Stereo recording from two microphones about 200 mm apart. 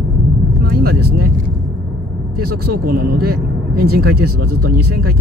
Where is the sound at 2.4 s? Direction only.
50° right (ahead or behind).